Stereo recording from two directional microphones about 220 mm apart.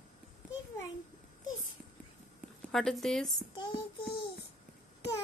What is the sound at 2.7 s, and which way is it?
Speech, centre (ahead or behind).